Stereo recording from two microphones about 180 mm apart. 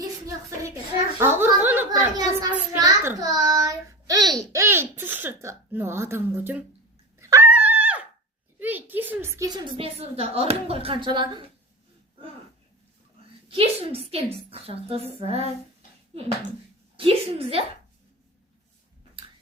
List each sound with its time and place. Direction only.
0.0 s a sound: 20° right (ahead or behind)
2.7 s child singing: 15° right (ahead or behind)
7.2 s dog: 15° right (ahead or behind)
8.5 s a woman's voice: 10° right (ahead or behind); by 11.4 s 25° right (ahead or behind)
13.5 s speech: 30° right (ahead or behind)
17.0 s speech: 30° right (ahead or behind)